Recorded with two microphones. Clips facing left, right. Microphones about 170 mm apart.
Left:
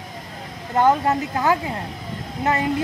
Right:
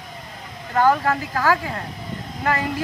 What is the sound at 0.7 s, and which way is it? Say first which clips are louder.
Speech: left 1 dB; 20° left (ahead or behind).